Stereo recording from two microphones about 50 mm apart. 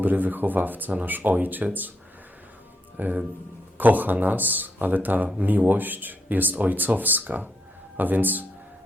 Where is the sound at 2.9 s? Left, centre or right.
Right.